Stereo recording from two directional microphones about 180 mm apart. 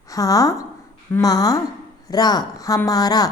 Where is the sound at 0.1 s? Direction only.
20° left (ahead or behind).